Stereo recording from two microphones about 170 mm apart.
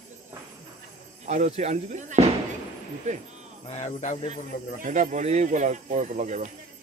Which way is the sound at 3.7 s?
40° left (ahead or behind).